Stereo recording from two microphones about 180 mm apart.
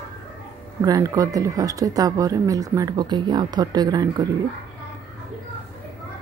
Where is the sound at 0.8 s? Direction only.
20° right (ahead or behind).